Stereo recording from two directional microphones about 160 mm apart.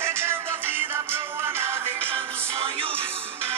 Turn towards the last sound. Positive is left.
turn(degrees=-35)  # may be behind; listen again after turning